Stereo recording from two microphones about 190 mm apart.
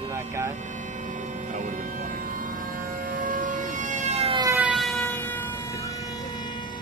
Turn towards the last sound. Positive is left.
turn(degrees=15)  # may be behind; listen again after turning